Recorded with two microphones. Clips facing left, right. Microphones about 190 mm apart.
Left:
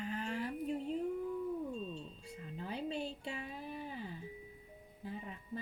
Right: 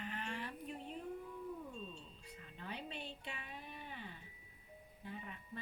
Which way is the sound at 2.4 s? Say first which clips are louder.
Left 7 dB; 35° left (ahead or behind).